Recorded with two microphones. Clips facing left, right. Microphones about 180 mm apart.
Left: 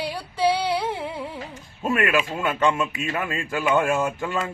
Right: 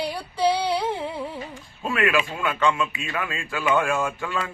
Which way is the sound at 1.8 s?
45° left (ahead or behind).